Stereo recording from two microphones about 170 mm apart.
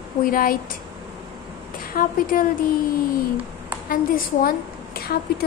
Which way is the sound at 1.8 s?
55° left (ahead or behind).